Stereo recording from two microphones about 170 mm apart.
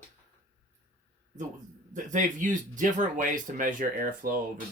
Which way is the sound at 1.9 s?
50° right (ahead or behind).